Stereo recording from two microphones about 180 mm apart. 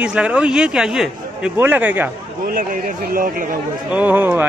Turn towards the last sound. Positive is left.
turn(degrees=-10)  # may be behind; listen again after turning